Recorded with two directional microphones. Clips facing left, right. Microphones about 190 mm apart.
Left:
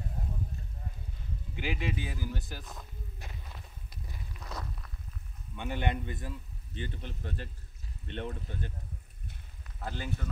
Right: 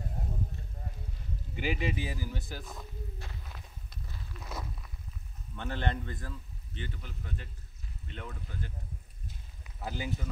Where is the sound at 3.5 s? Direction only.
10° left (ahead or behind).